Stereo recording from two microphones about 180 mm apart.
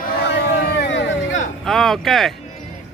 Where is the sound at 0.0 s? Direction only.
60° left (ahead or behind); by 1.4 s 90° left.